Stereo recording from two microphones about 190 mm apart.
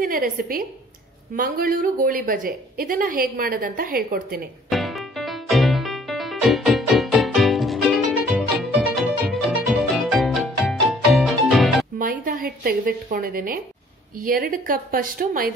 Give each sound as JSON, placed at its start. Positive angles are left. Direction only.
{"t": 0.0, "sound": "speech", "side_deg": -50}
{"t": 4.6, "sound": "music", "side_deg": 0}
{"t": 12.0, "sound": "a woman's voice", "side_deg": -45}